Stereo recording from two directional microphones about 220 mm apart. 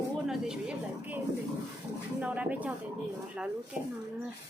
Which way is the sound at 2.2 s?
5° right (ahead or behind).